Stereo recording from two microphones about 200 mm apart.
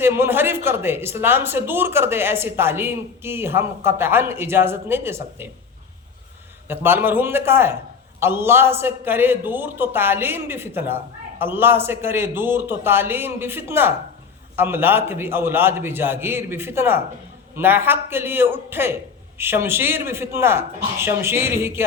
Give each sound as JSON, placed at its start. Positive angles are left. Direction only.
{"t": 0.0, "sound": "a man's voice", "side_deg": -10}
{"t": 6.7, "sound": "a man's voice", "side_deg": -10}